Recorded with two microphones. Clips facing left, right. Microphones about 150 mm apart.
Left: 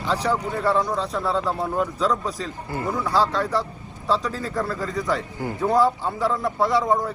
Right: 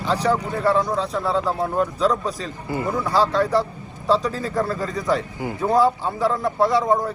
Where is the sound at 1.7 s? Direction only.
20° right (ahead or behind).